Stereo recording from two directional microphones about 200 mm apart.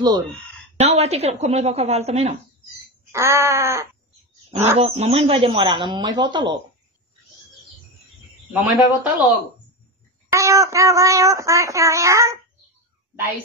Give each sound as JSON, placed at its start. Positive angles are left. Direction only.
{"t": 0.7, "sound": "a woman's voice", "side_deg": -30}
{"t": 3.1, "sound": "speech", "side_deg": -15}
{"t": 4.5, "sound": "speech", "side_deg": -30}
{"t": 8.5, "sound": "speech", "side_deg": -10}
{"t": 10.3, "sound": "speech", "side_deg": -15}